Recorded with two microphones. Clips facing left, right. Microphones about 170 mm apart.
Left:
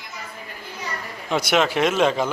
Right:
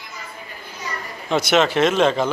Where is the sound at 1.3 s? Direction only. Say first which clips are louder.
Right 3 dB; 10° left (ahead or behind).